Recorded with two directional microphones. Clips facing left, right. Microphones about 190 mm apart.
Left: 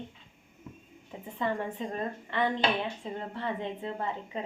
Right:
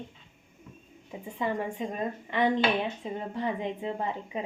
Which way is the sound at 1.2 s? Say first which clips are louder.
Right 1 dB; 15° right (ahead or behind).